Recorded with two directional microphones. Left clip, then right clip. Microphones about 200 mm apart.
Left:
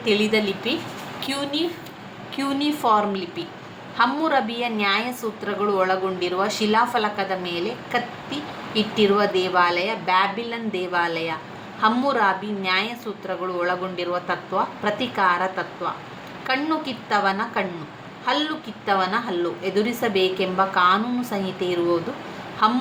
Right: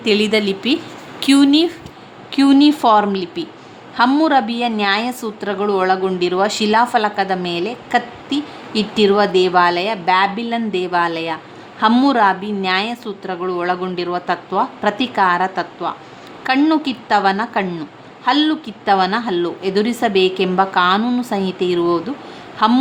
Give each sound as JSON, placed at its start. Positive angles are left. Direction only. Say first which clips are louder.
{"t": 0.0, "sound": "a woman's voice", "louder": "right 5 dB", "side_deg": -55}
{"t": 2.3, "sound": "a woman's voice", "louder": "right 12 dB", "side_deg": -45}